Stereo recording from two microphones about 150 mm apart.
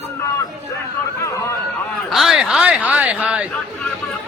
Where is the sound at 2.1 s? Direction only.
Centre (ahead or behind).